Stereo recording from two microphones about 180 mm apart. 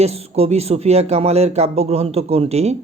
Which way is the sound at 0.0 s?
35° right (ahead or behind).